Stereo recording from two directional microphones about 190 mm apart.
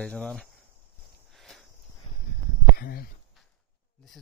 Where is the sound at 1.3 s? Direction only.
Centre (ahead or behind).